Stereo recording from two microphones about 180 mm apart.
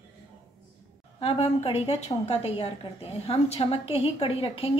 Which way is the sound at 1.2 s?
35° left (ahead or behind).